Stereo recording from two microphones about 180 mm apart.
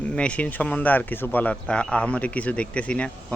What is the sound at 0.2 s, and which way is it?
A man's voice, 5° left (ahead or behind).